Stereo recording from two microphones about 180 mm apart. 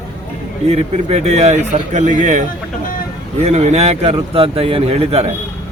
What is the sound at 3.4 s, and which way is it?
A man's voice, 35° right (ahead or behind).